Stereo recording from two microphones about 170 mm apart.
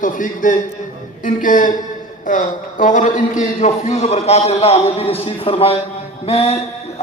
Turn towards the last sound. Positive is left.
turn(degrees=40)  # may be behind; listen again after turning